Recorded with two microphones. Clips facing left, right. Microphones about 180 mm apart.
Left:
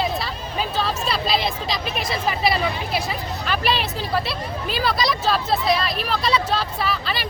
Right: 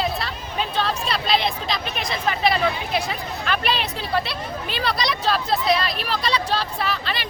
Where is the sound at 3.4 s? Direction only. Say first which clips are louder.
Left 1 dB; centre (ahead or behind).